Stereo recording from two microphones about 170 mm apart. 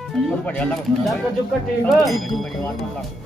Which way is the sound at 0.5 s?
10° left (ahead or behind).